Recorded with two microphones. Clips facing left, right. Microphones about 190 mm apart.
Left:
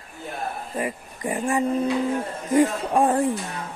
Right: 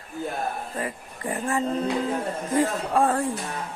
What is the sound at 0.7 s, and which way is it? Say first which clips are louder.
Speech: left 3 dB; 15° left (ahead or behind).